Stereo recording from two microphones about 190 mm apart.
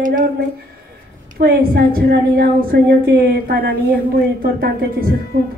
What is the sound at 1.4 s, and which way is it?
A woman's voice, 50° right (ahead or behind).